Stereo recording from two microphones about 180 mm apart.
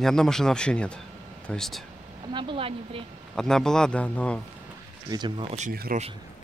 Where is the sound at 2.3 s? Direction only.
30° right (ahead or behind).